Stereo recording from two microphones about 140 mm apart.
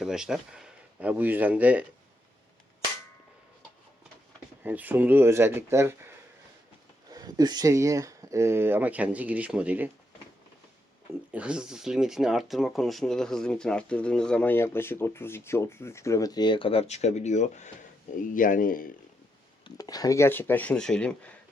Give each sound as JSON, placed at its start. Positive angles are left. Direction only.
{"t": 0.0, "sound": "speech", "side_deg": -5}
{"t": 4.6, "sound": "speech", "side_deg": -10}
{"t": 7.1, "sound": "speech", "side_deg": -25}
{"t": 11.3, "sound": "speech", "side_deg": -10}
{"t": 18.2, "sound": "speech", "side_deg": 70}
{"t": 19.6, "sound": "speech", "side_deg": 30}